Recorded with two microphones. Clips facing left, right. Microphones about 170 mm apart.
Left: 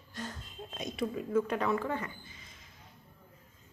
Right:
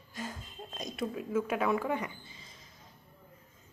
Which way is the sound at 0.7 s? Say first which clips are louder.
Left 1 dB; centre (ahead or behind).